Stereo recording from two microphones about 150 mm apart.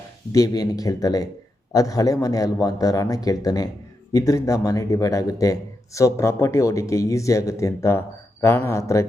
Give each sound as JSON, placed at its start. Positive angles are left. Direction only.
{"t": 0.3, "sound": "speech", "side_deg": 25}